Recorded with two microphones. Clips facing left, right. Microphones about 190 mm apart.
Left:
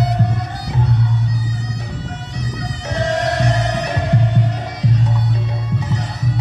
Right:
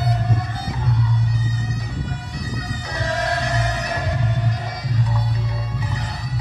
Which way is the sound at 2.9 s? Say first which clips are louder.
Left 5 dB; 70° left (ahead or behind).